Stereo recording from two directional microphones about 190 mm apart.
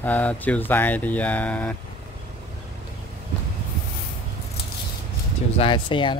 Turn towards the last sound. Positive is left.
turn(degrees=25)  # may be behind; listen again after turning